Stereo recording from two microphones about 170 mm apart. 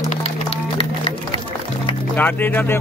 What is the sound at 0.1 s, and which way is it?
Music, 35° left (ahead or behind).